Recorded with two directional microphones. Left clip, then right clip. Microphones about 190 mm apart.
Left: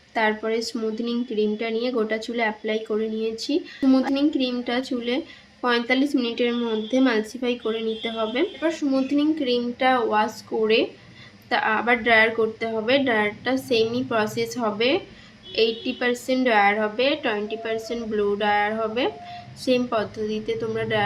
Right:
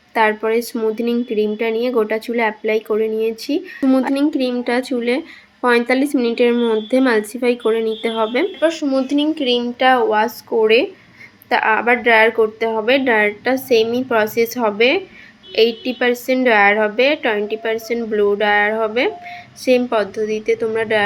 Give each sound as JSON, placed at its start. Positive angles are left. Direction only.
{"t": 0.1, "sound": "speech", "side_deg": -15}